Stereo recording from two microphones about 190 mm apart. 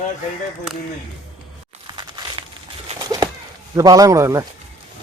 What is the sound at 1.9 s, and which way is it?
Crumpling, 25° right (ahead or behind).